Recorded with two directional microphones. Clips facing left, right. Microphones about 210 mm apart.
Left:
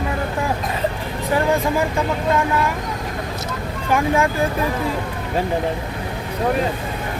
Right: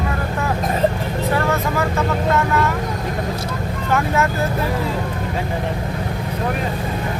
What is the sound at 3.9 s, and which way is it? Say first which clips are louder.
Speech: left 2 dB; 10° left (ahead or behind).